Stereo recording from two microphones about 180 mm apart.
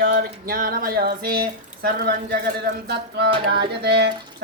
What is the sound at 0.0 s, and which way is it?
Speech, 50° right (ahead or behind).